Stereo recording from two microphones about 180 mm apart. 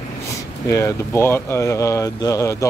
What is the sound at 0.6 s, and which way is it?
Speech, 15° left (ahead or behind).